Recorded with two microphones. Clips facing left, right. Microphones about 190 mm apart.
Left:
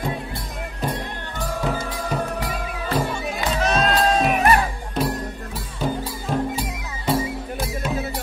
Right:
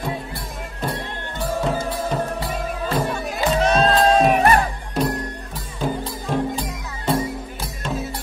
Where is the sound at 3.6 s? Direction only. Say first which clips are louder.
Right 3 dB; 35° right (ahead or behind).